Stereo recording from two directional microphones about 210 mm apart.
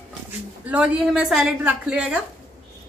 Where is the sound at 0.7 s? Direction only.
5° right (ahead or behind).